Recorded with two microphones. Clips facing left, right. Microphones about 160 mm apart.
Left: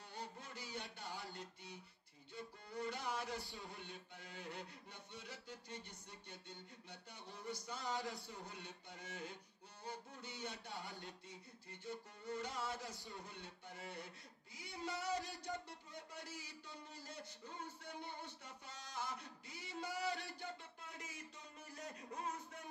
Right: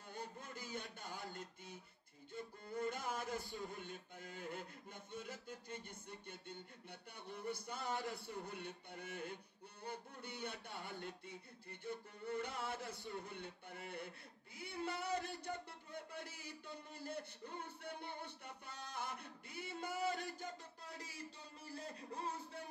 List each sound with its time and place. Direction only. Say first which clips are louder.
0.1 s a sound: right 2 dB; 50° right (ahead or behind)
2.3 s music: right 3 dB; 50° right (ahead or behind)
6.9 s speech: right 4 dB; 55° right (ahead or behind); by 22.7 s 30° right (ahead or behind)